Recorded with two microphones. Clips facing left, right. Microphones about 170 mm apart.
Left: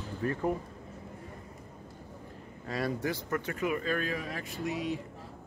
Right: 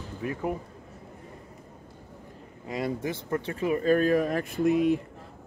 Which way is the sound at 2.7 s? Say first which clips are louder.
Right 2 dB; 20° right (ahead or behind).